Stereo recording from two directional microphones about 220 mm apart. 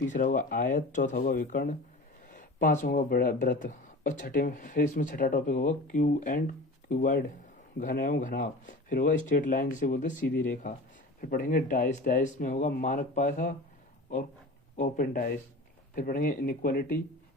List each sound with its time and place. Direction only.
0.1 s speech: 35° left (ahead or behind)
14.8 s speech: 40° left (ahead or behind)